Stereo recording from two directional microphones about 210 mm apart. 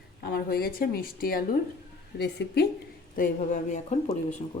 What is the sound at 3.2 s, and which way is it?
Speech, 40° left (ahead or behind).